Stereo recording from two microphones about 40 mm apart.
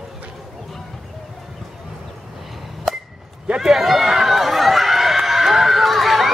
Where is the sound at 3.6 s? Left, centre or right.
Centre.